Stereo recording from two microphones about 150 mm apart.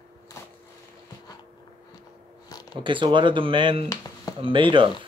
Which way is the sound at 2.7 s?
30° right (ahead or behind).